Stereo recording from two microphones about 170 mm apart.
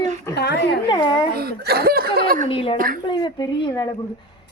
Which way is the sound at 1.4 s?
65° right (ahead or behind).